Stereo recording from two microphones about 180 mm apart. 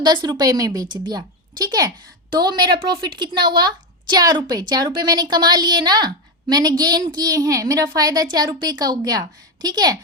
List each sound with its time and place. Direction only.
0.0 s a woman's voice: 25° right (ahead or behind)